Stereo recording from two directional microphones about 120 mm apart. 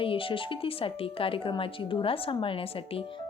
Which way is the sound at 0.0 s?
50° left (ahead or behind).